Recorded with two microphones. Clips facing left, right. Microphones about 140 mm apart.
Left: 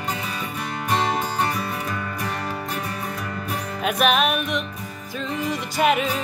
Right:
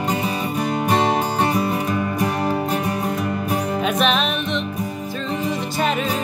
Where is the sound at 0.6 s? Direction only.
30° right (ahead or behind).